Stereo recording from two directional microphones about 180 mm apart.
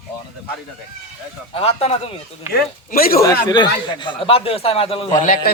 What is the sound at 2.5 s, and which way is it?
Speech, 55° left (ahead or behind).